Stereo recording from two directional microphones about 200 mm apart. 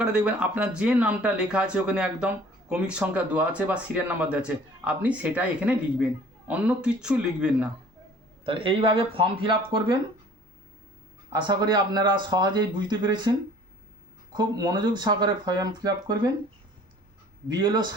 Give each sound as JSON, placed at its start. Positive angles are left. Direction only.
{"t": 0.0, "sound": "speech", "side_deg": -5}
{"t": 8.4, "sound": "speech", "side_deg": -25}
{"t": 11.3, "sound": "speech", "side_deg": -20}
{"t": 14.3, "sound": "speech", "side_deg": -20}
{"t": 17.5, "sound": "speech", "side_deg": -20}